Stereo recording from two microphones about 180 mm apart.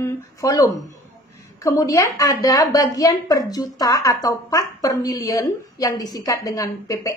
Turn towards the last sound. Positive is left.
turn(degrees=20)  # may be behind; listen again after turning